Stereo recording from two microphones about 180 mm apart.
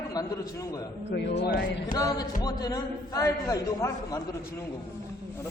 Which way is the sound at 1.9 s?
20° left (ahead or behind).